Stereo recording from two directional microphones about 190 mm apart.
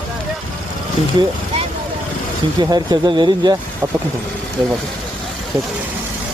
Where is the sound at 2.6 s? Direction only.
20° right (ahead or behind).